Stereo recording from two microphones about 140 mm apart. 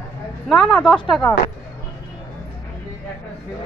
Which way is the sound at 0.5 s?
Centre (ahead or behind).